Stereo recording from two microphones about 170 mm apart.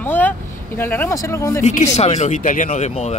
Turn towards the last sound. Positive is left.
turn(degrees=40)  # may be behind; listen again after turning